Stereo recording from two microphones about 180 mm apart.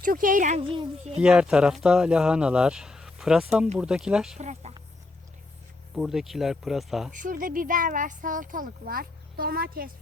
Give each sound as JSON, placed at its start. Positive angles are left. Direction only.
{"t": 0.0, "sound": "speech", "side_deg": -50}
{"t": 1.2, "sound": "speech", "side_deg": -5}
{"t": 4.4, "sound": "speech", "side_deg": -40}
{"t": 5.9, "sound": "speech", "side_deg": 0}
{"t": 7.1, "sound": "speech", "side_deg": -45}